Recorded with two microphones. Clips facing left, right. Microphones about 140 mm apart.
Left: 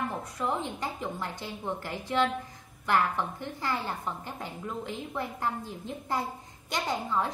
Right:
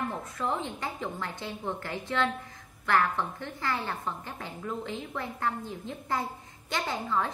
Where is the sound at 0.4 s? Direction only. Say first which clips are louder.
Even; 15° left (ahead or behind).